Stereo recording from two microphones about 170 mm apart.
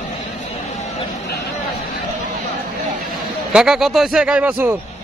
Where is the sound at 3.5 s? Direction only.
5° right (ahead or behind).